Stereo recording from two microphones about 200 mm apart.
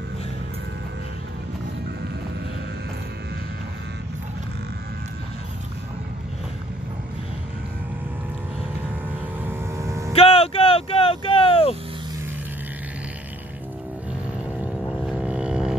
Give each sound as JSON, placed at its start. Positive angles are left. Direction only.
{"t": 9.4, "sound": "vehicle", "side_deg": -15}
{"t": 10.1, "sound": "music", "side_deg": 30}
{"t": 14.9, "sound": "vehicle", "side_deg": -5}